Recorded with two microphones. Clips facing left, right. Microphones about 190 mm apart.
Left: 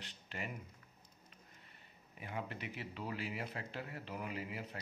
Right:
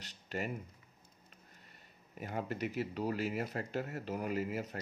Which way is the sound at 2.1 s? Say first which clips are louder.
Right 6 dB; 40° right (ahead or behind).